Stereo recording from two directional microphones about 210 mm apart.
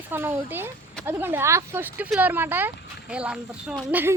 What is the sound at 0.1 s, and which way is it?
Speech, 10° right (ahead or behind).